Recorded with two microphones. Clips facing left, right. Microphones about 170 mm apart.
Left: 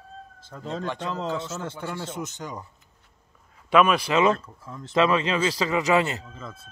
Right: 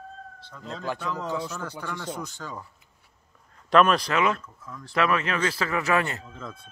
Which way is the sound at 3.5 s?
5° left (ahead or behind).